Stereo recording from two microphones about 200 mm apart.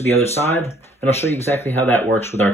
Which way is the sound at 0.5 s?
10° left (ahead or behind).